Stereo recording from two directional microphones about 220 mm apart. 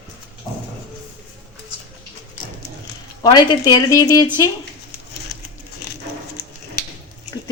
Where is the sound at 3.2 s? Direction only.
20° left (ahead or behind).